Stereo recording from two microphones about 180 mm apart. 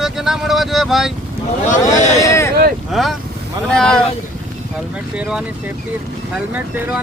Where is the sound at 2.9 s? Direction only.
Centre (ahead or behind).